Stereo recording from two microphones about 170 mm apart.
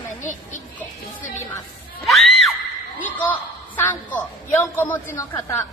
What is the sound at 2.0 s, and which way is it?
Screaming, centre (ahead or behind).